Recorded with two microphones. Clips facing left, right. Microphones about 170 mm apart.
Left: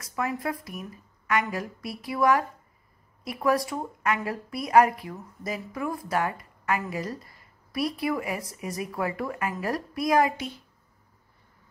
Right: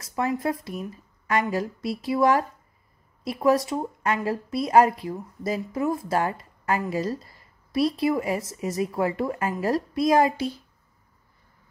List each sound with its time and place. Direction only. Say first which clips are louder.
0.0 s a woman's voice: right 4 dB; 25° right (ahead or behind)